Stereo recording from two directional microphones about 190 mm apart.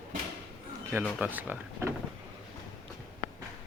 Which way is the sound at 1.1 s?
10° right (ahead or behind).